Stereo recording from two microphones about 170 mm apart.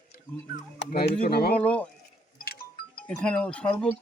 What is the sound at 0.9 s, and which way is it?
Speech, 65° left (ahead or behind).